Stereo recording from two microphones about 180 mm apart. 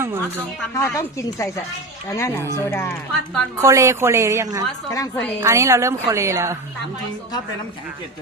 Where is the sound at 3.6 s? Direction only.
15° right (ahead or behind).